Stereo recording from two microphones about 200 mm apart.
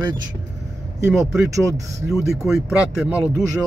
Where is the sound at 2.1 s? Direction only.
5° right (ahead or behind).